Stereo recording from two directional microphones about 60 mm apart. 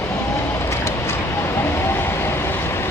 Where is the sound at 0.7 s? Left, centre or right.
Left.